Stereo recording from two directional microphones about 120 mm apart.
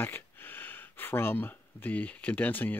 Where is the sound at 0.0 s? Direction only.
15° left (ahead or behind).